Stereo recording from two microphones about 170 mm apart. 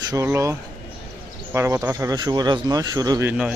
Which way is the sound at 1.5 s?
15° right (ahead or behind).